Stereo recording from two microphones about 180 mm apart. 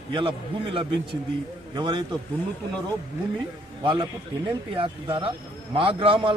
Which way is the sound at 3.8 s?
25° right (ahead or behind).